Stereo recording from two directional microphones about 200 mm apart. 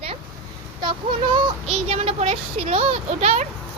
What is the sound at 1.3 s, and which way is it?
Speech, 30° right (ahead or behind).